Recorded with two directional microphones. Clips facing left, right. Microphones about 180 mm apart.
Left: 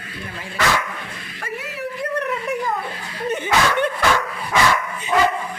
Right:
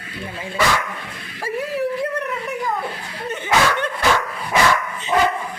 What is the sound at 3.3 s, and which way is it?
Dog, 15° left (ahead or behind).